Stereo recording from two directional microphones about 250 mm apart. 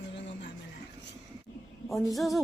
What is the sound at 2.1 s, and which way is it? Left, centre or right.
Speech, centre.